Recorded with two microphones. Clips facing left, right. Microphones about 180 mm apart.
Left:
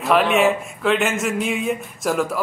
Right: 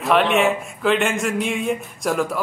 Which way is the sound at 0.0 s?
Centre (ahead or behind).